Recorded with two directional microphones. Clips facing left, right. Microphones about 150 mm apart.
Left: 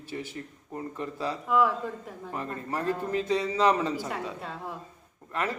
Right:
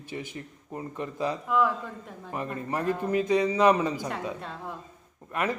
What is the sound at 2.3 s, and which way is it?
A man's voice, 15° right (ahead or behind).